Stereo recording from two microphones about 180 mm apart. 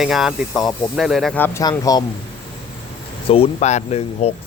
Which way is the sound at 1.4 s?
10° left (ahead or behind).